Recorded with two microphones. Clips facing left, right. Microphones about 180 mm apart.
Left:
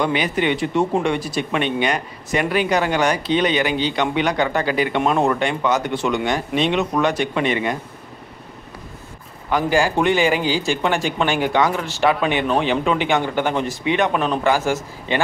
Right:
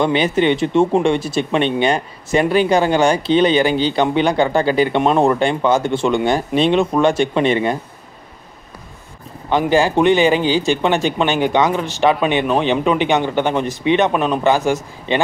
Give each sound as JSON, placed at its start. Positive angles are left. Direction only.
{"t": 0.0, "sound": "speech", "side_deg": -30}
{"t": 9.5, "sound": "speech", "side_deg": -25}